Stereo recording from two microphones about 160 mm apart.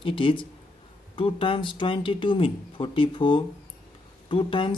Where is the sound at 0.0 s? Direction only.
30° left (ahead or behind).